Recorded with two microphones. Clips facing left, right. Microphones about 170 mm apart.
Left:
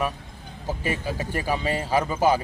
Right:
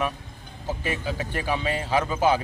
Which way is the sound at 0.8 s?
40° left (ahead or behind).